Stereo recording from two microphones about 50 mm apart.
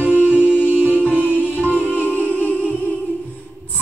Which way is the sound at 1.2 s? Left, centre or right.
Left.